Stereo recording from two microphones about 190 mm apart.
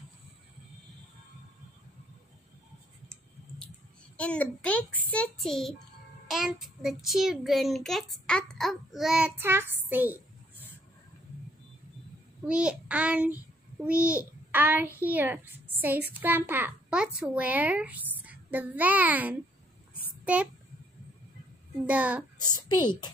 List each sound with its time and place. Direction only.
4.2 s a woman's voice: 5° left (ahead or behind); by 10.2 s 10° right (ahead or behind)
12.4 s a child's voice: 5° right (ahead or behind)
20.1 s a sound: 5° right (ahead or behind)
21.8 s a child's voice: 5° right (ahead or behind)
22.4 s a woman's voice: 20° left (ahead or behind)